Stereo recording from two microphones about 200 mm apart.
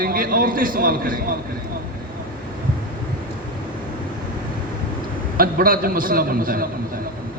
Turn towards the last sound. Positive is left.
turn(degrees=-45)  # may be behind; listen again after turning